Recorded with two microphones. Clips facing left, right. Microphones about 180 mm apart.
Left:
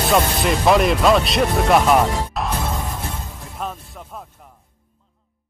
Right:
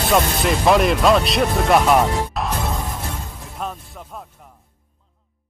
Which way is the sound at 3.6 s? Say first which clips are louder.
Even; centre (ahead or behind).